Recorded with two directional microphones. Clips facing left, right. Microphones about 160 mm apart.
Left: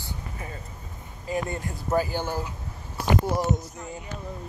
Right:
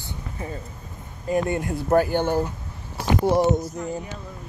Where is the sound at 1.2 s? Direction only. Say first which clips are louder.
Right 6 dB; 60° right (ahead or behind).